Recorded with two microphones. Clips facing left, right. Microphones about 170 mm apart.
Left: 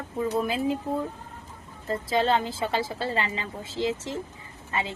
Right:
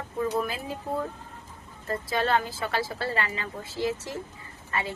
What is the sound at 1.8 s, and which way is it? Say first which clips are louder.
A woman's voice: left 3 dB; 20° left (ahead or behind).